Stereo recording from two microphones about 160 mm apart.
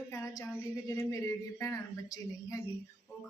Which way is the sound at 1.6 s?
20° left (ahead or behind).